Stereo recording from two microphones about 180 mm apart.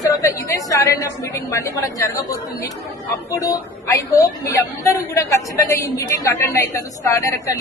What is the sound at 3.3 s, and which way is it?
A woman's voice, 20° left (ahead or behind).